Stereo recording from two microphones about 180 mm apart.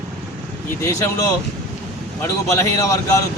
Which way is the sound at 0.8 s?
15° left (ahead or behind).